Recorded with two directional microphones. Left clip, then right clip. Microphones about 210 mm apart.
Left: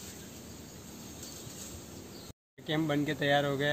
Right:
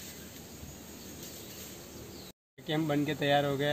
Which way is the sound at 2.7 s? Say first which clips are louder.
Even; 5° left (ahead or behind).